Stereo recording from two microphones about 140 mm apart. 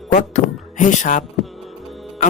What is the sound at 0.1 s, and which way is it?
Speech, 65° left (ahead or behind).